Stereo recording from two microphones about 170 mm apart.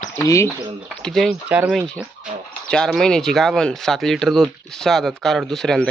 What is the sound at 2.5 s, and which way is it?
Speech, 5° left (ahead or behind).